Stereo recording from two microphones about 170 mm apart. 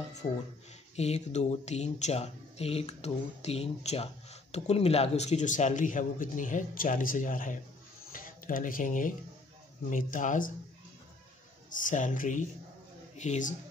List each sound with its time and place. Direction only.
0.2 s speech: 45° left (ahead or behind)
11.7 s speech: 50° left (ahead or behind)